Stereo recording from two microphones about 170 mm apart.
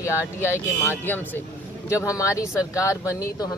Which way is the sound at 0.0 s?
15° left (ahead or behind).